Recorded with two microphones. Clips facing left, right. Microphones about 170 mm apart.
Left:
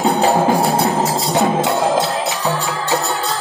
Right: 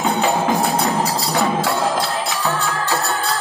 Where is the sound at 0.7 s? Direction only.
25° left (ahead or behind).